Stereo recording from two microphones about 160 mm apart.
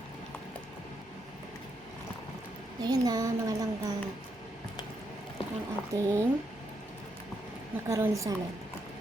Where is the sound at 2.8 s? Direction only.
25° right (ahead or behind).